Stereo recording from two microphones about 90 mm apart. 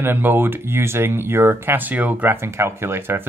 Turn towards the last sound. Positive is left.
turn(degrees=-25)  # may be behind; listen again after turning